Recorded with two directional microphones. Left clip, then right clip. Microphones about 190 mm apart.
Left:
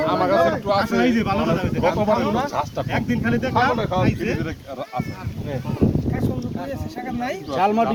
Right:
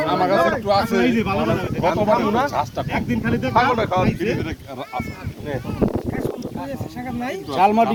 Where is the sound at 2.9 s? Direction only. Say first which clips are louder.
Even; 30° left (ahead or behind).